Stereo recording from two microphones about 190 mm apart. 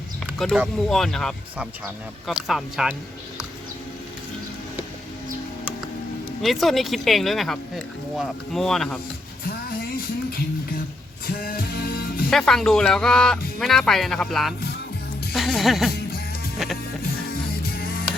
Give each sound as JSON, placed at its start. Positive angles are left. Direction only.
{"t": 0.3, "sound": "speech", "side_deg": 0}
{"t": 6.4, "sound": "speech", "side_deg": 0}
{"t": 11.3, "sound": "music", "side_deg": 50}
{"t": 12.3, "sound": "speech", "side_deg": 0}